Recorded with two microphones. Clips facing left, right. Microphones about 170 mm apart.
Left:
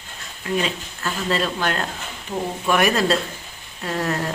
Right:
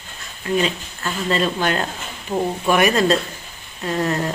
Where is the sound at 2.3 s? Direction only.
20° right (ahead or behind).